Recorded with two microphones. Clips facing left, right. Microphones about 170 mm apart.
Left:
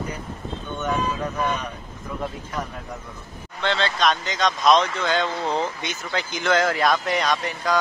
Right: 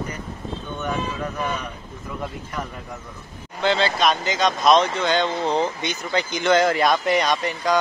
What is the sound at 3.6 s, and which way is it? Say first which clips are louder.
Speech: right 3 dB; 5° right (ahead or behind).